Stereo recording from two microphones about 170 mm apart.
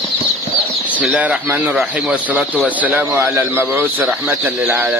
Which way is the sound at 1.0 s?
5° right (ahead or behind).